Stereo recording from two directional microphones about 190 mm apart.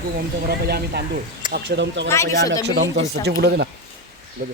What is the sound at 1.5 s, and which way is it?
Speech, 70° right (ahead or behind).